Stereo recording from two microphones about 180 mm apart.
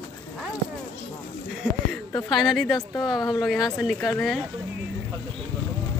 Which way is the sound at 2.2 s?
Centre (ahead or behind).